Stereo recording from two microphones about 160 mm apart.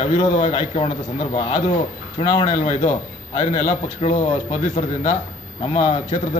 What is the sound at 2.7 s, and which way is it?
A man's voice, 45° left (ahead or behind).